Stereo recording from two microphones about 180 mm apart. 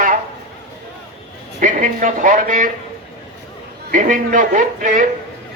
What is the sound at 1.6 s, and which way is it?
Speech, 45° right (ahead or behind).